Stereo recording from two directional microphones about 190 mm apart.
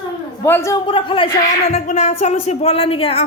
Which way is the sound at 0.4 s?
15° left (ahead or behind).